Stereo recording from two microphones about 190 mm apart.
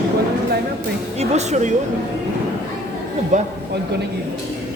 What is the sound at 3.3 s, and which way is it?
Speech, 40° right (ahead or behind).